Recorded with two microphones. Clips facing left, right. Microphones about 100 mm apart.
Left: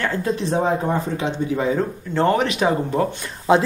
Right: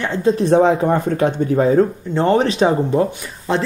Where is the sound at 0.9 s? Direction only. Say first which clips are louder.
Right 6 dB; 55° right (ahead or behind); by 2.7 s 35° right (ahead or behind).